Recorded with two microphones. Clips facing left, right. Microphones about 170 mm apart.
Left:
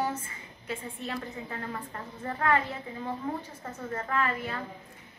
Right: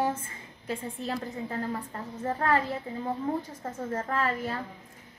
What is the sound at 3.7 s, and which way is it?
Speech, 45° right (ahead or behind).